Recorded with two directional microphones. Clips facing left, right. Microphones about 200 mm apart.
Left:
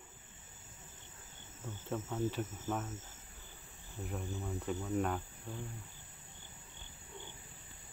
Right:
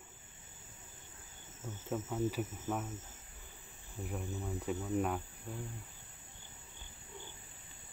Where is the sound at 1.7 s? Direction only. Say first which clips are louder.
Right 1 dB; 5° right (ahead or behind).